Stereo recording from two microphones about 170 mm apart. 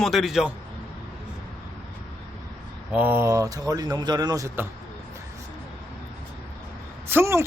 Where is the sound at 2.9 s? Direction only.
10° right (ahead or behind).